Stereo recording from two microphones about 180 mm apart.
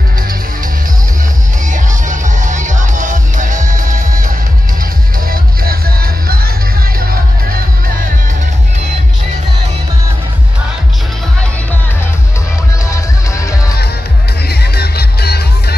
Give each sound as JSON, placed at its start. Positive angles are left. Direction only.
{"t": 1.7, "sound": "music", "side_deg": -45}
{"t": 5.3, "sound": "music", "side_deg": -55}
{"t": 12.9, "sound": "music", "side_deg": 15}
{"t": 14.5, "sound": "music", "side_deg": 60}